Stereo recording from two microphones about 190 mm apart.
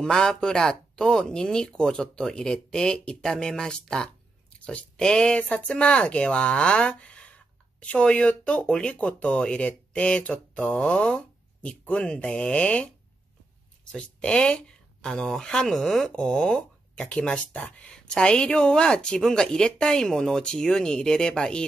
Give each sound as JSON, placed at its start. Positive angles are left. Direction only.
{"t": 0.0, "sound": "speech", "side_deg": 5}
{"t": 13.9, "sound": "speech", "side_deg": 5}